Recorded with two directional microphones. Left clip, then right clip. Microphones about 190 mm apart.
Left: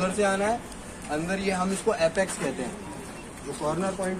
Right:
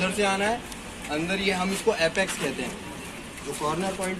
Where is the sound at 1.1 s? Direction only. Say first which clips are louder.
Right 2 dB; 10° left (ahead or behind).